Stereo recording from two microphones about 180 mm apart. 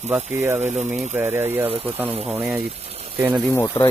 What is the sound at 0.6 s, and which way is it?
Speech, 40° right (ahead or behind).